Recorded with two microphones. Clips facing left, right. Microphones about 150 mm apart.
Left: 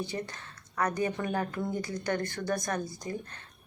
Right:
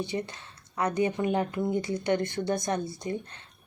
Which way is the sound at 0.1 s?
20° right (ahead or behind).